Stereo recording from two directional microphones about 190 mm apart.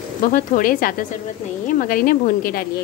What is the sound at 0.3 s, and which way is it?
Speech, 45° left (ahead or behind).